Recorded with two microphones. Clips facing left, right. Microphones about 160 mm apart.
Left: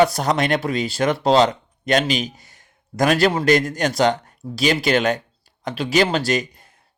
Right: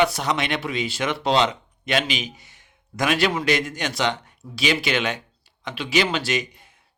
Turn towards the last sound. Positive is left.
turn(degrees=40)  # may be behind; listen again after turning